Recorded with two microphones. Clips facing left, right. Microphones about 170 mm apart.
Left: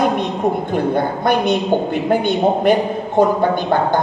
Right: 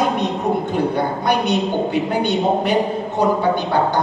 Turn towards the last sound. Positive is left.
turn(degrees=50)  # may be behind; listen again after turning